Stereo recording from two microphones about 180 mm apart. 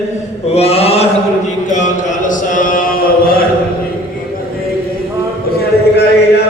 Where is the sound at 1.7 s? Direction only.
45° left (ahead or behind).